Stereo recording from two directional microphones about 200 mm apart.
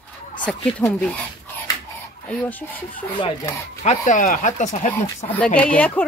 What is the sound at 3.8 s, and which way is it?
Speech, 35° left (ahead or behind).